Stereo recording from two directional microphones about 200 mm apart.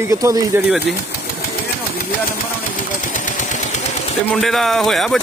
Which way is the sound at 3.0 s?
40° left (ahead or behind).